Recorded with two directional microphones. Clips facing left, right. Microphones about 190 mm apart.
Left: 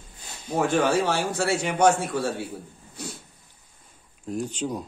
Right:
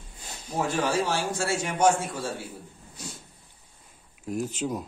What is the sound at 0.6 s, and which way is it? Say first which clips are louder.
A man's voice: left 4 dB; 60° left (ahead or behind).